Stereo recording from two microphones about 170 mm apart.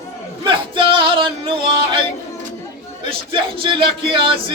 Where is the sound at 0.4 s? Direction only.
30° right (ahead or behind).